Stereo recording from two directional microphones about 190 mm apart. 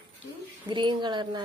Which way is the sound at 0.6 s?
25° right (ahead or behind).